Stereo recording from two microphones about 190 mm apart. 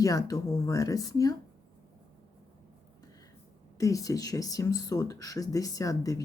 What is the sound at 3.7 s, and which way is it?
Speech, 15° left (ahead or behind).